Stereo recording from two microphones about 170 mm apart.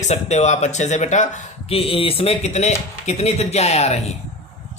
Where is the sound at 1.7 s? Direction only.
35° left (ahead or behind).